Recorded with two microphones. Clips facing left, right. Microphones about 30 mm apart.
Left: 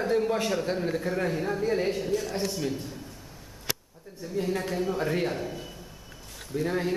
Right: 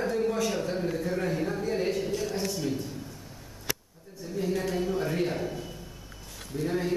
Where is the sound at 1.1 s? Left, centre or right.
Centre.